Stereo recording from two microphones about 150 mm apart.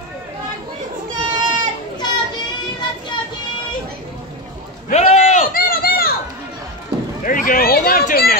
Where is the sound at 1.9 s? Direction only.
30° left (ahead or behind).